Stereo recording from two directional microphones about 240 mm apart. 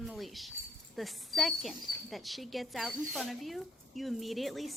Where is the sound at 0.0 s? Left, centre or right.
Centre.